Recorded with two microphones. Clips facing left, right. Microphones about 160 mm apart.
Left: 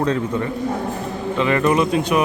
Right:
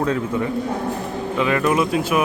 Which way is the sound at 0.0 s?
5° right (ahead or behind).